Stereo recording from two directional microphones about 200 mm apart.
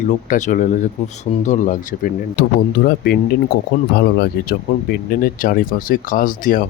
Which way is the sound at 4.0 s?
50° left (ahead or behind).